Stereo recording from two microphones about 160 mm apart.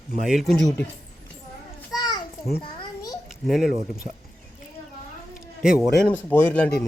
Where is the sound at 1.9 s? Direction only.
25° left (ahead or behind).